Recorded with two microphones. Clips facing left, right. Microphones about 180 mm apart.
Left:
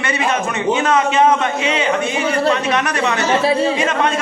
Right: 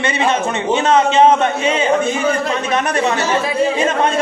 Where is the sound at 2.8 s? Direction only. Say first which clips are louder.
Right 2 dB; 30° right (ahead or behind).